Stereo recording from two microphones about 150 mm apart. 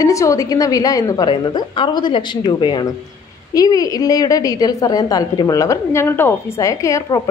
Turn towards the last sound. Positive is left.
turn(degrees=20)  # may be behind; listen again after turning